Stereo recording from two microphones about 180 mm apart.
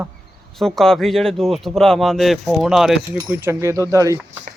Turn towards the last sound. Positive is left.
turn(degrees=-15)  # may be behind; listen again after turning